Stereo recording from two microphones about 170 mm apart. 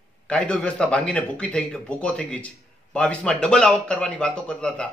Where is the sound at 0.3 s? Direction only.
5° left (ahead or behind).